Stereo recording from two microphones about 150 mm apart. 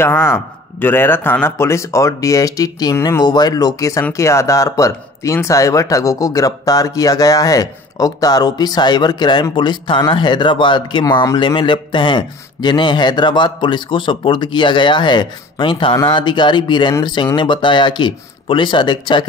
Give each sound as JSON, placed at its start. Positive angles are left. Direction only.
{"t": 0.0, "sound": "speech", "side_deg": 15}